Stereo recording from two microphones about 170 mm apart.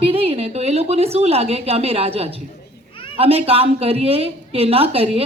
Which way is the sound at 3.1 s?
35° right (ahead or behind).